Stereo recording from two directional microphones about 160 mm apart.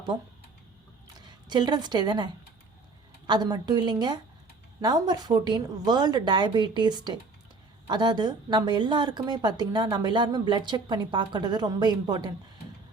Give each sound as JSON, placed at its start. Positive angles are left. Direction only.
{"t": 1.2, "sound": "a woman's voice", "side_deg": -30}